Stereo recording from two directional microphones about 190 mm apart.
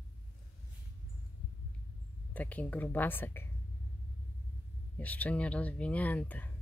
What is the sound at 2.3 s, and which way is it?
Speech, 10° left (ahead or behind).